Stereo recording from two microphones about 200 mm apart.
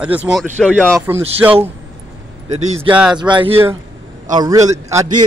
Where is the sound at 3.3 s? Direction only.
25° right (ahead or behind).